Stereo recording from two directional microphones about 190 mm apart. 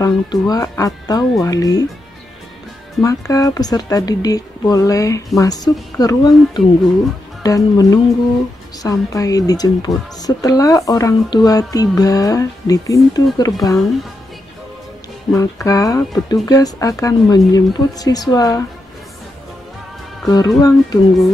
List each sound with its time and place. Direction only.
0.0 s speech: 20° left (ahead or behind)
3.0 s speech: 20° left (ahead or behind)
15.3 s speech: 15° left (ahead or behind)
20.2 s speech: 20° left (ahead or behind)